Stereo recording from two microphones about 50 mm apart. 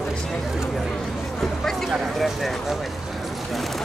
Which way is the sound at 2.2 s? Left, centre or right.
Centre.